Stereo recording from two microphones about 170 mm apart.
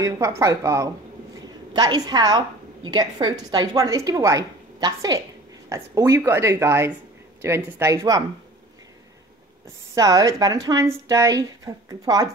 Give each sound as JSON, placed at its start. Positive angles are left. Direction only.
{"t": 0.0, "sound": "a woman's voice", "side_deg": -20}
{"t": 9.9, "sound": "a woman's voice", "side_deg": -20}